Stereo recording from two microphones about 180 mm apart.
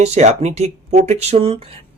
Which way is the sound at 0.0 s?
35° right (ahead or behind).